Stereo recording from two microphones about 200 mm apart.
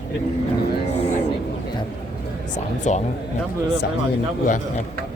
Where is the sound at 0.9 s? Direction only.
30° left (ahead or behind).